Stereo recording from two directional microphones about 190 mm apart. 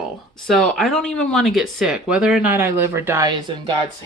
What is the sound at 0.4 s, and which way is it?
Speech, centre (ahead or behind).